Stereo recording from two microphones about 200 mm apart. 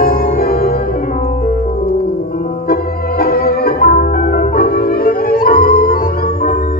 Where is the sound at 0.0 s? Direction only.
45° left (ahead or behind).